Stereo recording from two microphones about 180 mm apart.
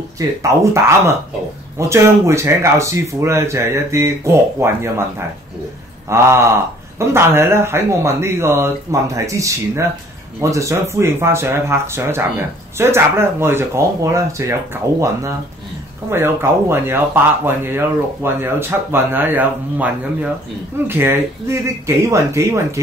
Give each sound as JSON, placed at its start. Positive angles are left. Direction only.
{"t": 0.4, "sound": "speech", "side_deg": -15}
{"t": 6.0, "sound": "speech", "side_deg": -15}